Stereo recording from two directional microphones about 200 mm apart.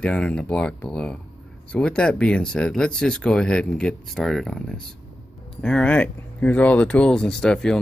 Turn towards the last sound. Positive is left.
turn(degrees=5)  # may be behind; listen again after turning